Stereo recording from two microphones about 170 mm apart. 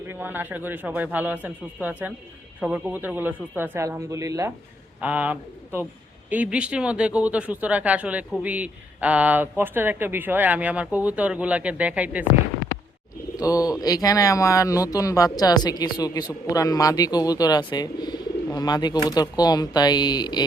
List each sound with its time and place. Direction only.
0.1 s speech: 10° right (ahead or behind)
13.3 s speech: 20° left (ahead or behind)